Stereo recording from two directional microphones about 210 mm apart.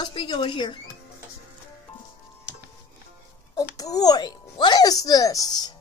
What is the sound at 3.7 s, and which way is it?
Speech, 15° left (ahead or behind).